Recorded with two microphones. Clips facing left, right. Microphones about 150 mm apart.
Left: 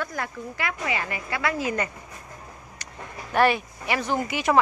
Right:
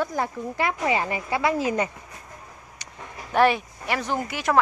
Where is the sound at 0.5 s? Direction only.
35° right (ahead or behind).